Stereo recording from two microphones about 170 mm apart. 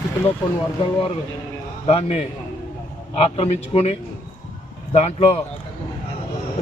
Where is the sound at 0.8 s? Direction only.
30° left (ahead or behind).